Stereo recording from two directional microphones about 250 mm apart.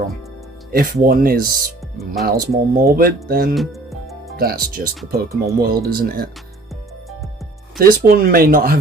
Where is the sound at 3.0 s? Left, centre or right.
Right.